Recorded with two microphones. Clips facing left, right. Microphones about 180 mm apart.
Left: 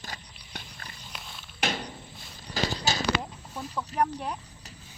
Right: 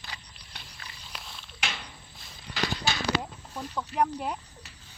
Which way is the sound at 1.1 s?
Centre (ahead or behind).